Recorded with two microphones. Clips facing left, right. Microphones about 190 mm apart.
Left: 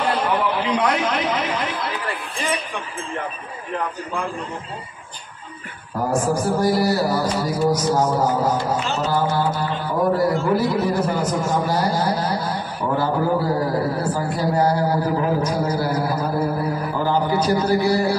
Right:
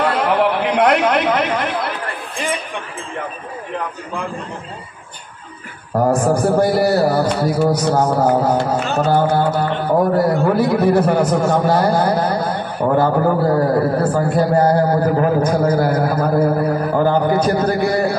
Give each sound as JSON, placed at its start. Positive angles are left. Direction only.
{"t": 0.0, "sound": "chatter", "side_deg": -65}
{"t": 6.6, "sound": "music", "side_deg": -60}